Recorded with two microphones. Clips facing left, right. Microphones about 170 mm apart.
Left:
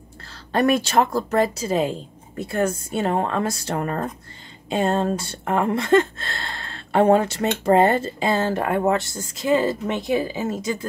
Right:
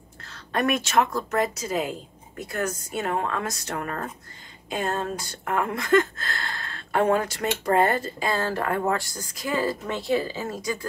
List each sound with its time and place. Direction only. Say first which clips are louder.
0.3 s speech: left 5 dB; 30° left (ahead or behind)